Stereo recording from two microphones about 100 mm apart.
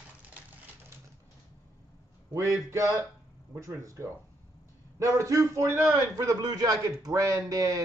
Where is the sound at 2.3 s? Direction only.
30° right (ahead or behind).